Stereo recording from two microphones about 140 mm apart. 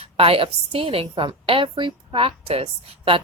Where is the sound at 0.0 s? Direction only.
45° right (ahead or behind).